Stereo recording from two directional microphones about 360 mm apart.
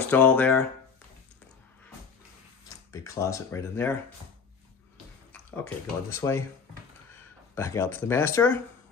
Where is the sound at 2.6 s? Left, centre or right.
Centre.